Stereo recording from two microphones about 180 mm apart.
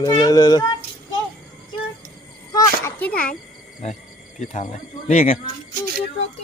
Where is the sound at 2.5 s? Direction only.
20° left (ahead or behind).